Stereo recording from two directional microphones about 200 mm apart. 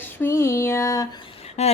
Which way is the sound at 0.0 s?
10° left (ahead or behind).